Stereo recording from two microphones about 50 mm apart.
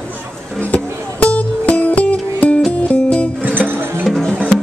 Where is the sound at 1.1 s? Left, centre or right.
Left.